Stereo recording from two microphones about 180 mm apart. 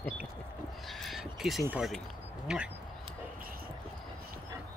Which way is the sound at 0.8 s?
Centre (ahead or behind).